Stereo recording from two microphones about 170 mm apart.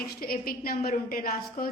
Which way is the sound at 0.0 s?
60° left (ahead or behind).